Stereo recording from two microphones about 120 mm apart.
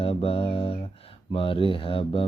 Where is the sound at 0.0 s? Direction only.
55° left (ahead or behind).